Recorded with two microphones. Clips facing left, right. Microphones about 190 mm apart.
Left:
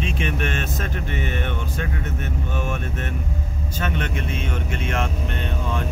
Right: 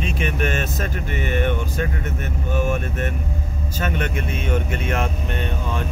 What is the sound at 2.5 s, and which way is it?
Speech, 45° right (ahead or behind).